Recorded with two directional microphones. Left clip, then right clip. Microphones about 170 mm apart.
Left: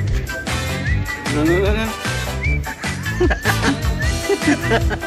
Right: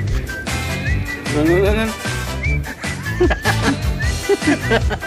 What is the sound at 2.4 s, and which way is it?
Music, centre (ahead or behind).